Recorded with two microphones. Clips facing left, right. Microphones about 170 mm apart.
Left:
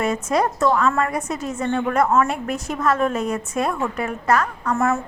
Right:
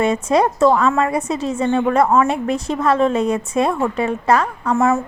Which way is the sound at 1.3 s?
30° right (ahead or behind).